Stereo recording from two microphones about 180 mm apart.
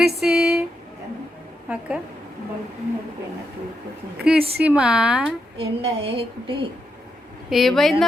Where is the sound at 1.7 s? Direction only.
5° right (ahead or behind).